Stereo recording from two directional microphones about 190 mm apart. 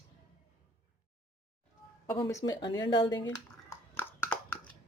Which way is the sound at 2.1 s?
15° left (ahead or behind).